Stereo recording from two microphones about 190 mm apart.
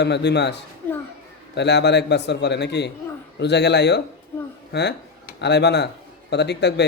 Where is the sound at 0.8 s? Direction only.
10° left (ahead or behind).